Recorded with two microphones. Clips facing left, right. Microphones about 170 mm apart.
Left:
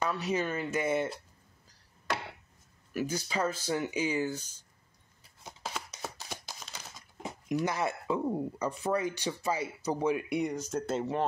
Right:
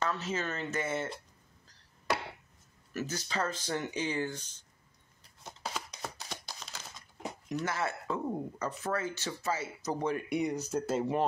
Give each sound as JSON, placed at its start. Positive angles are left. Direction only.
{"t": 0.0, "sound": "speech", "side_deg": 15}
{"t": 2.9, "sound": "speech", "side_deg": 10}
{"t": 5.4, "sound": "a sound", "side_deg": 0}
{"t": 7.4, "sound": "speech", "side_deg": 15}